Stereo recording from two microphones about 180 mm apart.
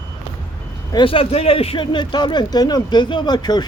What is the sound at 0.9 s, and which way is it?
Speech, 30° left (ahead or behind).